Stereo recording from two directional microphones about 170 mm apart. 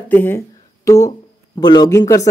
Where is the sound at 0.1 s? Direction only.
10° left (ahead or behind).